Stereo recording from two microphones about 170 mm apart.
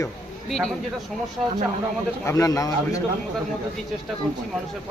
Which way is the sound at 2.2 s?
20° left (ahead or behind).